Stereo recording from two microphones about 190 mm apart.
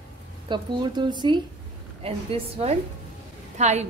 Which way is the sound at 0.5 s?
25° right (ahead or behind).